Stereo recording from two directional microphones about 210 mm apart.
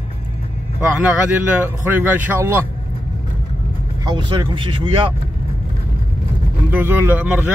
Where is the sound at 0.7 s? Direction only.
10° right (ahead or behind).